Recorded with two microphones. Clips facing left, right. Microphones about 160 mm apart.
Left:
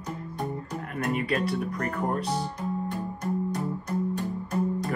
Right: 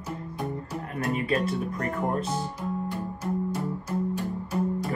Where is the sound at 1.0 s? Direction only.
35° right (ahead or behind).